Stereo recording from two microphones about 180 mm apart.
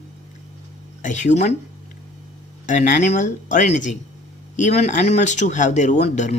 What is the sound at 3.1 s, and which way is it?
Speech, 45° left (ahead or behind).